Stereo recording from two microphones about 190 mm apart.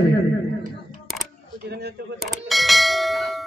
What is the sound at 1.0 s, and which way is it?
Single-lens reflex camera, centre (ahead or behind).